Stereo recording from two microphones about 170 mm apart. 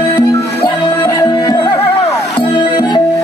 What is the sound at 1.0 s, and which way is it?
Music, 20° left (ahead or behind).